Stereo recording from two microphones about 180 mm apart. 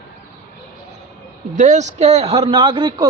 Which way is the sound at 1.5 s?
40° right (ahead or behind).